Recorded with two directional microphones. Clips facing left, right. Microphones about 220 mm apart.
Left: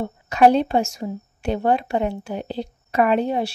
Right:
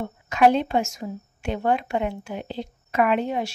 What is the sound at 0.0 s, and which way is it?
Speech, 35° left (ahead or behind).